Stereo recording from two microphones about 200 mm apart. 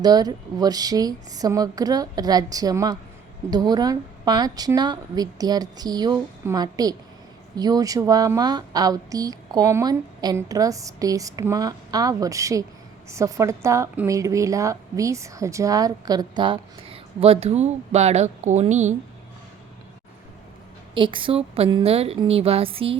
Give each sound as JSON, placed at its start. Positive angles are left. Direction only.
{"t": 0.0, "sound": "a woman's voice", "side_deg": -20}
{"t": 20.9, "sound": "a woman's voice", "side_deg": -25}